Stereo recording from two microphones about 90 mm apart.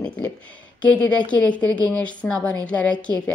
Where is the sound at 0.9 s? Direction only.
15° left (ahead or behind).